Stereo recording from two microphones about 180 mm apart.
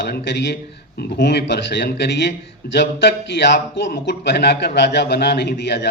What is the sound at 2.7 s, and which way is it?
A man's voice, 70° left (ahead or behind).